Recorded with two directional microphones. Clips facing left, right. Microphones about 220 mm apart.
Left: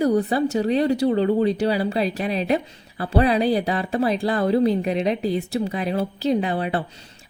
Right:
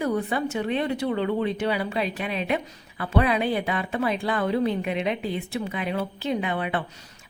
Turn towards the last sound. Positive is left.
turn(degrees=35)  # may be behind; listen again after turning